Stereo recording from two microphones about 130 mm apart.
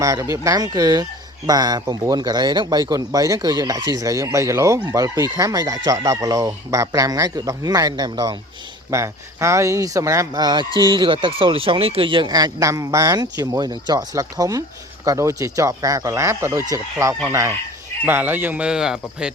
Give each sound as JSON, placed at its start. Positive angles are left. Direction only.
{"t": 0.0, "sound": "speech", "side_deg": -25}